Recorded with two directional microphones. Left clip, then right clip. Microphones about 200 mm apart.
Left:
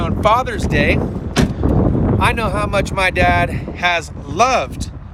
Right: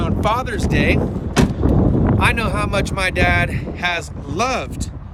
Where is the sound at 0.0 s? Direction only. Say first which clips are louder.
Left 5 dB; 10° right (ahead or behind).